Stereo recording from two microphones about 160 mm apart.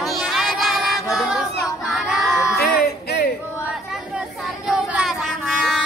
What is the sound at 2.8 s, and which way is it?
Music, 90° left.